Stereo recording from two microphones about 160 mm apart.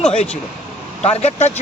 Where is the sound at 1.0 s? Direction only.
40° left (ahead or behind).